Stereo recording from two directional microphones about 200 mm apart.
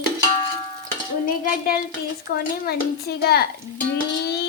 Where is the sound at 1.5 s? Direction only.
45° left (ahead or behind).